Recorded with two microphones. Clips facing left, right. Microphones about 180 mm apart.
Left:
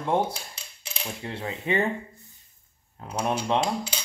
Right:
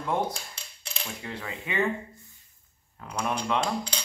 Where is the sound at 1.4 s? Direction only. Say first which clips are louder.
Left 6 dB; 40° left (ahead or behind).